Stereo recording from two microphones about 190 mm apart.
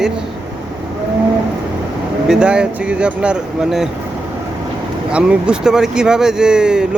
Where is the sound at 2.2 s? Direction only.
5° right (ahead or behind).